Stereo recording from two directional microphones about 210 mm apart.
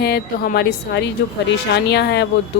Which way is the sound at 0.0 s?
50° left (ahead or behind).